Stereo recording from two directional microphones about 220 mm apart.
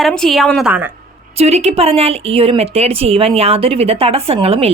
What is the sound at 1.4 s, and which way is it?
A woman's voice, 30° right (ahead or behind).